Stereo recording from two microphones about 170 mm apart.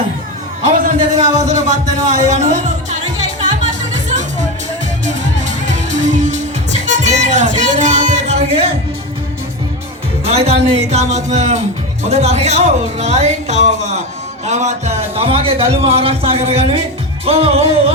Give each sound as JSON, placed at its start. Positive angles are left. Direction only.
{"t": 0.7, "sound": "a sound", "side_deg": -50}
{"t": 2.2, "sound": "music", "side_deg": -45}
{"t": 10.2, "sound": "music", "side_deg": -35}
{"t": 12.0, "sound": "a man's voice", "side_deg": -40}
{"t": 17.2, "sound": "music", "side_deg": -35}